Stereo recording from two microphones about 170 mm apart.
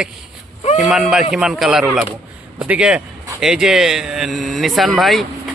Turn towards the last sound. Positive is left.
turn(degrees=0)  # may be behind; listen again after turning